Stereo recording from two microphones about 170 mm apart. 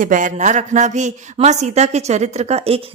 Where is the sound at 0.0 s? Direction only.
50° right (ahead or behind).